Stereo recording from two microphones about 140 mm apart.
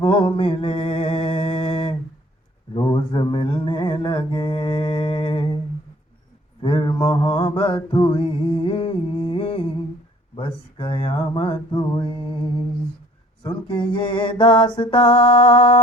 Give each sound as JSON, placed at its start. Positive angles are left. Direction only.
{"t": 0.0, "sound": "mantra", "side_deg": 40}
{"t": 6.6, "sound": "mantra", "side_deg": 35}